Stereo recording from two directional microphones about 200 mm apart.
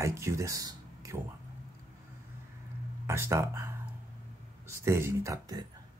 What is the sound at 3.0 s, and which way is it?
Speech, 15° right (ahead or behind).